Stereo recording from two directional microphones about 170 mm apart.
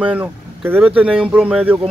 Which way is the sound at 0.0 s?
10° right (ahead or behind).